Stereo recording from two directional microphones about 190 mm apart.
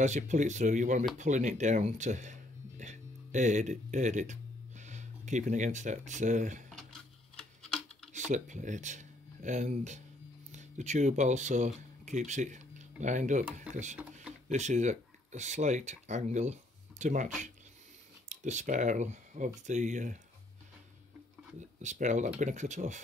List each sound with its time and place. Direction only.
0.0 s speech: 40° right (ahead or behind)
6.7 s a sound: 5° left (ahead or behind)
8.1 s speech: 40° right (ahead or behind)
14.5 s speech: 40° right (ahead or behind)
18.3 s speech: 40° right (ahead or behind)
21.5 s speech: 40° right (ahead or behind)